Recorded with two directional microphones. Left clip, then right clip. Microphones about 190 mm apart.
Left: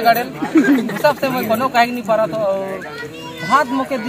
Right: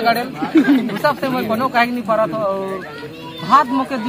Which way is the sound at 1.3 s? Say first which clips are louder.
Left 1 dB; centre (ahead or behind).